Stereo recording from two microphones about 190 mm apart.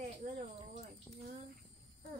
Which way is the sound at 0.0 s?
40° right (ahead or behind).